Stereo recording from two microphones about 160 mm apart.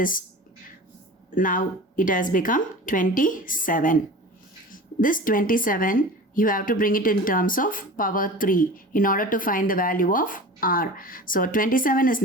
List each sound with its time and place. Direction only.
0.0 s speech: 60° left (ahead or behind)
1.4 s speech: 55° left (ahead or behind)